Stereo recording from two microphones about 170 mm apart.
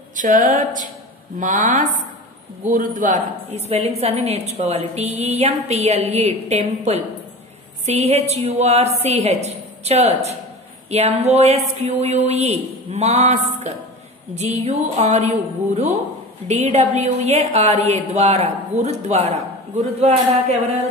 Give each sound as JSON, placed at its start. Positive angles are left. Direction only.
{"t": 0.1, "sound": "a woman's voice", "side_deg": -50}